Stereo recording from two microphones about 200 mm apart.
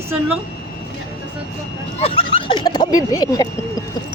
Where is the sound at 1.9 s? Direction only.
30° left (ahead or behind).